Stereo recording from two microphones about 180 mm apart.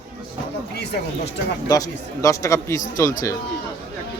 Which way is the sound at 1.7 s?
20° left (ahead or behind).